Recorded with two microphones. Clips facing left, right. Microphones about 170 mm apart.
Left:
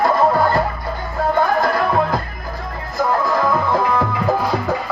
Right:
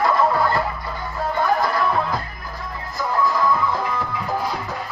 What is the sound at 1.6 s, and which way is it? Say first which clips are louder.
Music: left 4 dB; 50° left (ahead or behind).